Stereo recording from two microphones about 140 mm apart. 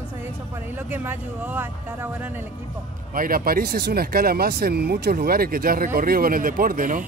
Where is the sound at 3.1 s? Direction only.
90° right; by 7.0 s 70° right (ahead or behind).